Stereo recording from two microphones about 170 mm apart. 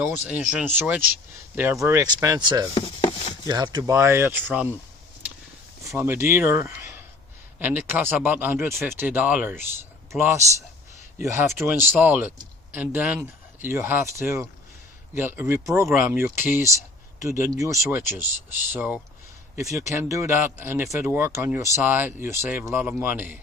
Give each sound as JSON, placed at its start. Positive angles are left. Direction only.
{"t": 0.1, "sound": "speech", "side_deg": -10}
{"t": 2.7, "sound": "a sound", "side_deg": 30}
{"t": 3.4, "sound": "speech", "side_deg": -25}
{"t": 6.0, "sound": "a man's voice", "side_deg": -15}